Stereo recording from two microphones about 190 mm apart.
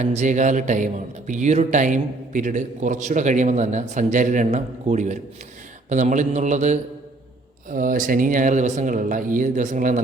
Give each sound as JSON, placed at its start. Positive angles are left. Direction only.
{"t": 0.0, "sound": "a man's voice", "side_deg": -40}